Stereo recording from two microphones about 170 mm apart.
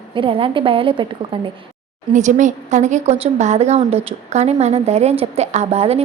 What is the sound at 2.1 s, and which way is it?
A woman's voice, 45° right (ahead or behind).